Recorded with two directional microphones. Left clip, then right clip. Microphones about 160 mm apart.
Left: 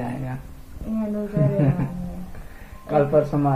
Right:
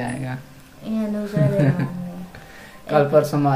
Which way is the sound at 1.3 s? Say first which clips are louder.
Right 3 dB; 25° right (ahead or behind).